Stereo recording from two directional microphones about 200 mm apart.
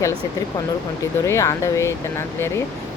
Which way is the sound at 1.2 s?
15° left (ahead or behind).